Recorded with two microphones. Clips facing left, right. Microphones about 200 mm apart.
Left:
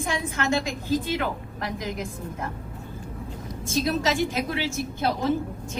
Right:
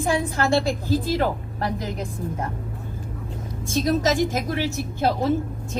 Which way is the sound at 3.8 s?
40° right (ahead or behind).